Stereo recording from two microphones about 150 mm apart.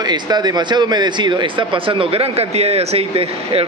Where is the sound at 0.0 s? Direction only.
25° right (ahead or behind).